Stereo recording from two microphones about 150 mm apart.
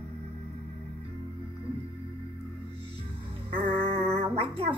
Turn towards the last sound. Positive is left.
turn(degrees=-40)  # may be behind; listen again after turning